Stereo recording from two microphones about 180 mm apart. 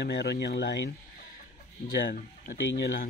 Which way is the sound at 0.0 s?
70° left (ahead or behind).